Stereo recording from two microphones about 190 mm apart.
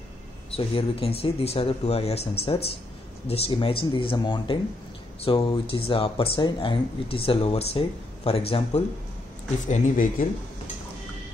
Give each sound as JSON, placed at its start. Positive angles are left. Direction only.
{"t": 0.5, "sound": "speech", "side_deg": 30}
{"t": 9.7, "sound": "speech", "side_deg": 40}